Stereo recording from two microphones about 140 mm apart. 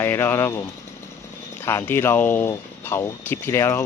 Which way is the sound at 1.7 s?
15° left (ahead or behind).